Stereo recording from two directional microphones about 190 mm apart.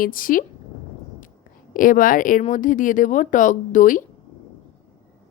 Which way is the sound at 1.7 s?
45° left (ahead or behind).